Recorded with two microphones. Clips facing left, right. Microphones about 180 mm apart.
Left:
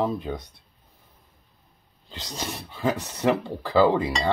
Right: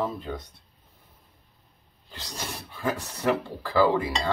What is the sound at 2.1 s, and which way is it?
Speech, 20° left (ahead or behind).